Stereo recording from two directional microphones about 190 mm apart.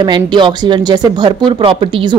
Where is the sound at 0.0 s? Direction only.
25° right (ahead or behind).